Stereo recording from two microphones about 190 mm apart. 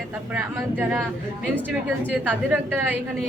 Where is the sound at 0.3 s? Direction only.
10° right (ahead or behind).